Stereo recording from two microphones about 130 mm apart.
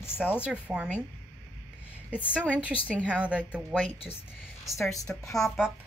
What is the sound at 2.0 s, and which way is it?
A woman's voice, 10° right (ahead or behind).